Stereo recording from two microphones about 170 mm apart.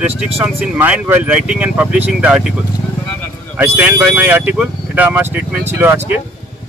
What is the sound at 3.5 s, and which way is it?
Speech, 10° right (ahead or behind).